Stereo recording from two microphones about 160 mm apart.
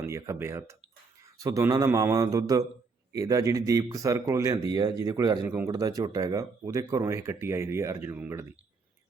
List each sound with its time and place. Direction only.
0.0 s speech: 20° right (ahead or behind)